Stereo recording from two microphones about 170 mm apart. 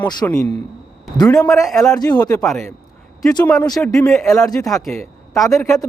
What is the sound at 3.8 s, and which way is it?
Speech, 20° left (ahead or behind).